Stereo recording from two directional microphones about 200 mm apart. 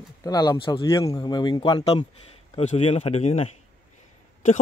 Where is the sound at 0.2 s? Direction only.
20° left (ahead or behind).